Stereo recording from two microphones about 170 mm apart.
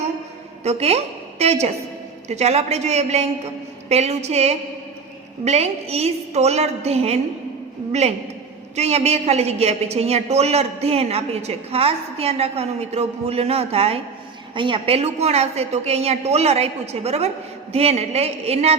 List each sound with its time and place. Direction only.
0.6 s a woman's voice: 40° right (ahead or behind)
8.7 s a woman's voice: 40° right (ahead or behind)